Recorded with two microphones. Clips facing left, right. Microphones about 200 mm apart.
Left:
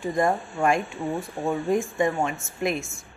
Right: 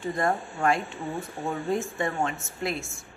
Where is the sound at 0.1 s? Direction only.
15° left (ahead or behind).